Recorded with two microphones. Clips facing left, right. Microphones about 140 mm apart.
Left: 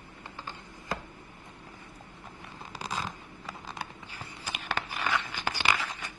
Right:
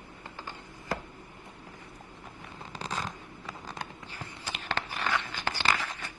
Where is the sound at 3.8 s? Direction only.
10° left (ahead or behind).